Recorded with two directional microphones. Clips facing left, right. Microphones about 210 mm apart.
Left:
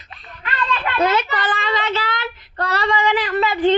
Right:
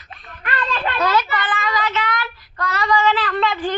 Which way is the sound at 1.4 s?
35° left (ahead or behind).